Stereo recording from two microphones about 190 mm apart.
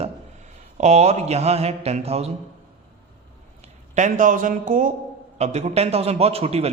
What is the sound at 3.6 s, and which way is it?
A man's voice, 40° right (ahead or behind).